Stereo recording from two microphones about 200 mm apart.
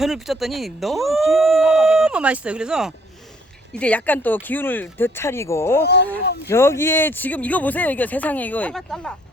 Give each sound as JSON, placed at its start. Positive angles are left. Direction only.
{"t": 0.0, "sound": "speech", "side_deg": 0}
{"t": 5.8, "sound": "speech", "side_deg": 55}
{"t": 6.5, "sound": "speech", "side_deg": 15}